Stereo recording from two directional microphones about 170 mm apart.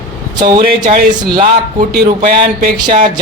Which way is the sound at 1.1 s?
25° right (ahead or behind).